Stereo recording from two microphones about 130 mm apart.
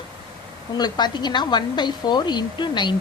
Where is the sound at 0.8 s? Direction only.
30° left (ahead or behind).